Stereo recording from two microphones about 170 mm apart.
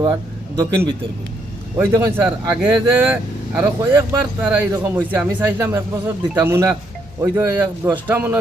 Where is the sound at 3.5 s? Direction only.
10° right (ahead or behind).